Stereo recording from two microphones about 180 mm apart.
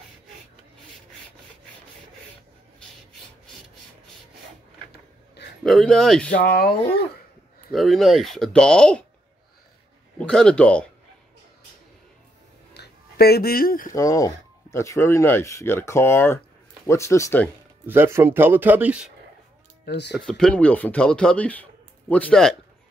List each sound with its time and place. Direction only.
4.9 s a sound: 65° left (ahead or behind)
5.6 s speech: centre (ahead or behind)
6.4 s speech: 60° left (ahead or behind)
7.7 s speech: centre (ahead or behind)
10.1 s speech: 5° left (ahead or behind)
12.7 s speech: 65° left (ahead or behind)
13.9 s speech: 20° left (ahead or behind)
17.8 s speech: 15° right (ahead or behind)
19.8 s speech: 65° left (ahead or behind)
20.2 s speech: 5° left (ahead or behind)